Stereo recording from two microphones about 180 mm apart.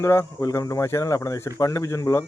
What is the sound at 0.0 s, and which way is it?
Speech, 15° left (ahead or behind).